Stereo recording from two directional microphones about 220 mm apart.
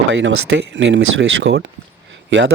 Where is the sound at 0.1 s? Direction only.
55° right (ahead or behind).